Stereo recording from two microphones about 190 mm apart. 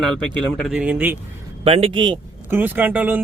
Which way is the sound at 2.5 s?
10° right (ahead or behind).